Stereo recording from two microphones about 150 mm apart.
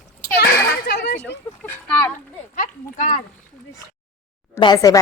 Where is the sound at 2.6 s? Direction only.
60° left (ahead or behind).